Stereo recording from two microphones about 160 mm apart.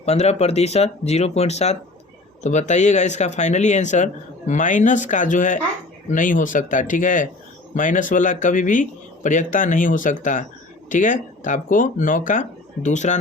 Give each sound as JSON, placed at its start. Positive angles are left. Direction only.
{"t": 0.0, "sound": "speech", "side_deg": 40}